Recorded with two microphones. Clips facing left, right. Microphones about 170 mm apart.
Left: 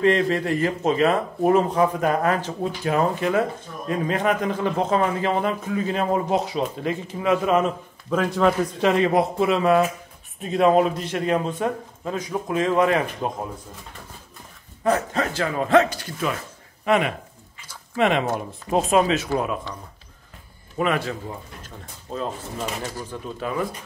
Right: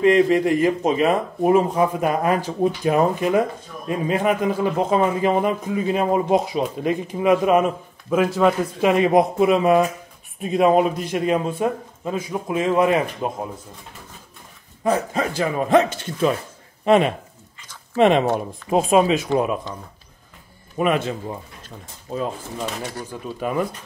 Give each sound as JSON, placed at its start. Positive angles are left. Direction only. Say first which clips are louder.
{"t": 0.0, "sound": "speech", "louder": "right 4 dB", "side_deg": -15}
{"t": 8.9, "sound": "speech", "louder": "right 6 dB", "side_deg": -15}
{"t": 14.8, "sound": "speech", "louder": "right 1 dB", "side_deg": -10}
{"t": 18.8, "sound": "speech", "louder": "right 3 dB", "side_deg": -10}
{"t": 19.2, "sound": "speech", "louder": "right 4 dB", "side_deg": -25}
{"t": 20.7, "sound": "speech", "louder": "right 3 dB", "side_deg": -20}
{"t": 23.1, "sound": "speech", "louder": "right 1 dB", "side_deg": -10}